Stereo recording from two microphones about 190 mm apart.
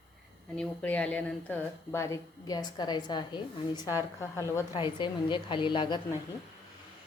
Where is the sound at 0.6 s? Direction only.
5° left (ahead or behind); by 6.0 s 25° left (ahead or behind).